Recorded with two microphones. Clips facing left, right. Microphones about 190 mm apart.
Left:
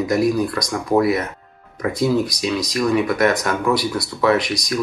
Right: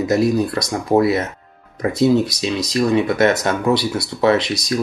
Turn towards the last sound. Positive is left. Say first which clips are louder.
# right 2 dB
turn(degrees=-25)  # may be behind; listen again after turning